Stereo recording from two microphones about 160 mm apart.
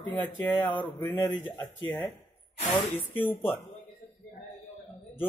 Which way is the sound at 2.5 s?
35° left (ahead or behind).